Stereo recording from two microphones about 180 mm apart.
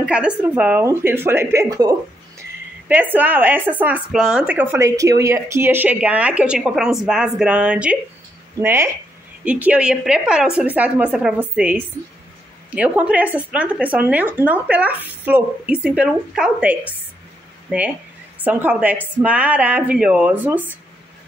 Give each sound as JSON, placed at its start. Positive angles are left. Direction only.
{"t": 0.0, "sound": "a woman's voice", "side_deg": -5}